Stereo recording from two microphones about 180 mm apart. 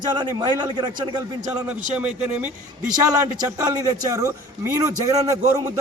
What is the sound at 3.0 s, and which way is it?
A man's voice, 20° right (ahead or behind).